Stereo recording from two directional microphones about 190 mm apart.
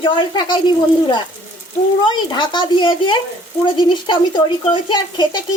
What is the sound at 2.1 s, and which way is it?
Speech, 25° left (ahead or behind).